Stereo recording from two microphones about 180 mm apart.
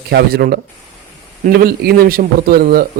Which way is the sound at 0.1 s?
60° right (ahead or behind).